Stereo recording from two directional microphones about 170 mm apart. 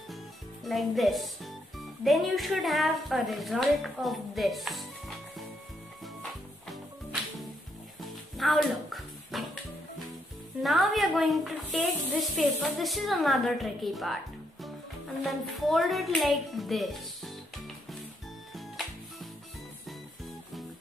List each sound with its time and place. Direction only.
0.7 s speech: centre (ahead or behind)
6.7 s music: centre (ahead or behind)
10.6 s speech: centre (ahead or behind)
15.2 s speech: centre (ahead or behind)